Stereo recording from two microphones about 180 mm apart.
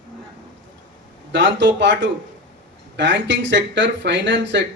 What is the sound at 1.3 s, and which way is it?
A man's voice, 80° right.